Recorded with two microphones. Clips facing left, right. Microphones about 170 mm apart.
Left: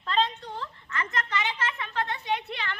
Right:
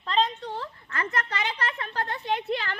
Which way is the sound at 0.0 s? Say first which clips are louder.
Right 1 dB; 30° right (ahead or behind).